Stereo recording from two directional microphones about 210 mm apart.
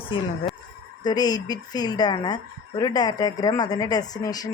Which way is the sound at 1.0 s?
20° left (ahead or behind).